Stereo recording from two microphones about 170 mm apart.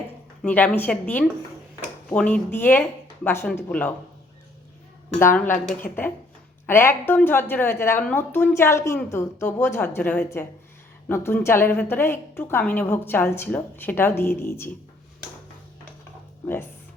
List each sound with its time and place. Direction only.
0.4 s a woman's voice: 5° left (ahead or behind)
5.2 s a woman's voice: 15° left (ahead or behind)
5.8 s speech: 60° left (ahead or behind)
6.7 s a woman's voice: 15° left (ahead or behind)